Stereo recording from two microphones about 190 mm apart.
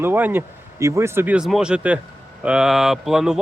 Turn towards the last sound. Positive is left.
turn(degrees=-5)  # may be behind; listen again after turning